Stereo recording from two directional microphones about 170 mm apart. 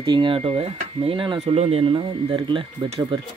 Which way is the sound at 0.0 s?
30° right (ahead or behind).